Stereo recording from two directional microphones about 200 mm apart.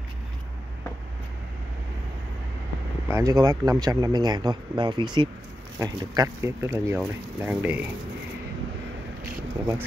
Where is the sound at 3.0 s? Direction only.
15° right (ahead or behind).